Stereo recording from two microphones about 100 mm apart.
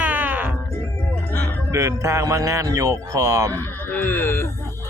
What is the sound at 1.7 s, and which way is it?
Speech, 30° right (ahead or behind).